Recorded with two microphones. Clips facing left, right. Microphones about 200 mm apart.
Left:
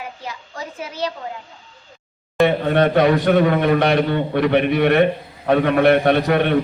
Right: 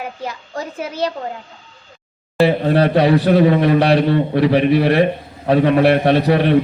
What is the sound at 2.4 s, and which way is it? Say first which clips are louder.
A man's voice: right 2 dB; 35° right (ahead or behind).